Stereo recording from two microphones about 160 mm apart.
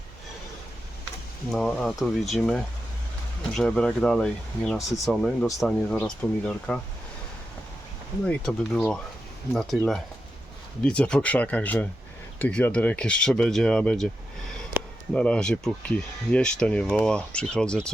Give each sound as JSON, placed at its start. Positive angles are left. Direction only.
{"t": 1.5, "sound": "speech", "side_deg": 5}
{"t": 8.3, "sound": "speech", "side_deg": 5}
{"t": 15.1, "sound": "speech", "side_deg": 5}